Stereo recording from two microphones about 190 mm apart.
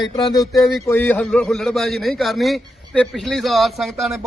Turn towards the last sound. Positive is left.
turn(degrees=0)  # may be behind; listen again after turning